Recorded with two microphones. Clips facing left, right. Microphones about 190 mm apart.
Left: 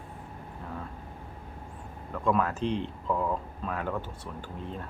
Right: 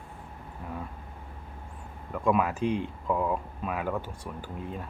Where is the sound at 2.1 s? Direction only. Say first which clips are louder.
Right 1 dB; 10° right (ahead or behind).